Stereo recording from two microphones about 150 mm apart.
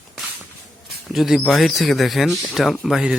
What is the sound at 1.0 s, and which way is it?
Speech, centre (ahead or behind).